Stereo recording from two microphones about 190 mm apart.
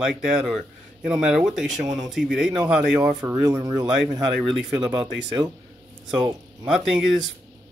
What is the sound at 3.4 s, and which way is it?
Speech, 20° right (ahead or behind).